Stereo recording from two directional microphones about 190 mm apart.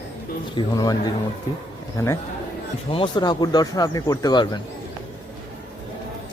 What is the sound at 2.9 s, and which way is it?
Speech, 25° left (ahead or behind).